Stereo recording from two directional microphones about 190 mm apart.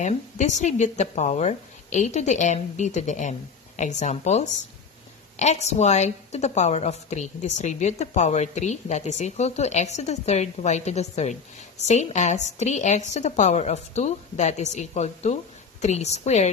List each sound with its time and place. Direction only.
0.0 s a woman's voice: 40° left (ahead or behind)